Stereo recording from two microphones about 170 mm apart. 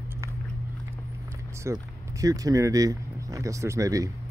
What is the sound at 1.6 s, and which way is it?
Speech, 20° right (ahead or behind).